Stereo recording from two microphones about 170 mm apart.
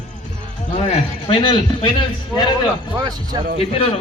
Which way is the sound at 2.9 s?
25° right (ahead or behind).